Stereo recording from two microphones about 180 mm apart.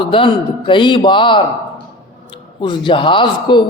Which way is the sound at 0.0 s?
30° left (ahead or behind).